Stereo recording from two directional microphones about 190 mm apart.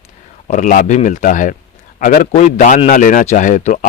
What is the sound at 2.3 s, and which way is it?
Speech, 40° left (ahead or behind).